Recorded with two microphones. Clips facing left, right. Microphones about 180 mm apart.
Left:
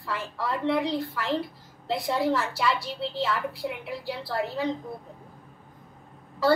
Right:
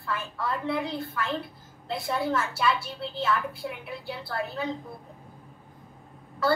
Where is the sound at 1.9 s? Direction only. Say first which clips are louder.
Left 3 dB; 20° left (ahead or behind).